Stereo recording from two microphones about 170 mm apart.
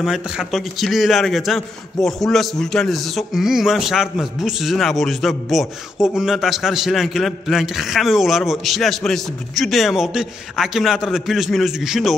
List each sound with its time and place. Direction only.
0.0 s a man's voice: 5° right (ahead or behind)